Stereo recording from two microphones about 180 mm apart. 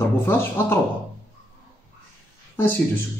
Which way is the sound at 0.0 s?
15° left (ahead or behind).